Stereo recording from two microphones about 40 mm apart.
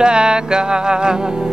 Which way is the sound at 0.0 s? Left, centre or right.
Right.